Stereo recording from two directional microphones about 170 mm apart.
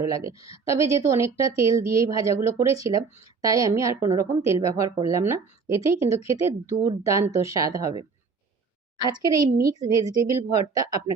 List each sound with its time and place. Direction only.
0.0 s a woman's voice: 20° right (ahead or behind)